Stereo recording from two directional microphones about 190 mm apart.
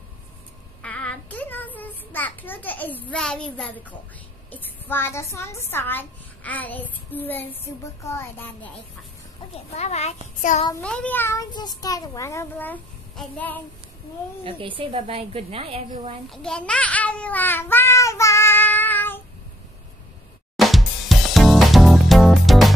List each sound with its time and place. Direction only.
0.8 s child singing: 5° left (ahead or behind)
4.5 s a child's voice: 10° left (ahead or behind)
9.8 s a child's voice: 35° left (ahead or behind)
10.8 s a child's voice: 5° left (ahead or behind)
14.4 s a woman's voice: 25° right (ahead or behind)
16.3 s a child's voice: 5° left (ahead or behind)
20.5 s music: centre (ahead or behind)